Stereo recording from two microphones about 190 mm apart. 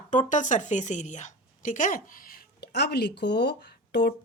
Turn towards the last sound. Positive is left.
turn(degrees=60)  # may be behind; listen again after turning